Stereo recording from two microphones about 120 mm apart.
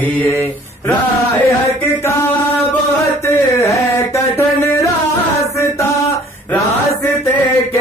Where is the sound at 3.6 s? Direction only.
25° left (ahead or behind).